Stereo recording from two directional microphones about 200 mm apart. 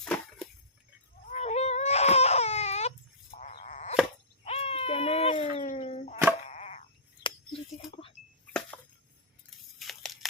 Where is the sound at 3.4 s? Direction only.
35° left (ahead or behind).